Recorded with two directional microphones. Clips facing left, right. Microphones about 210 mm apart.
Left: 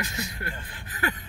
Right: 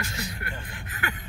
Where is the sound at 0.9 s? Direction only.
35° left (ahead or behind).